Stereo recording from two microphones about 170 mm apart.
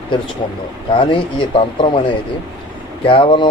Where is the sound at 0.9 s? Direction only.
30° left (ahead or behind).